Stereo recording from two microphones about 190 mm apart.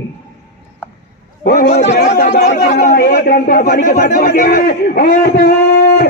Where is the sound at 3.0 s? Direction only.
55° left (ahead or behind).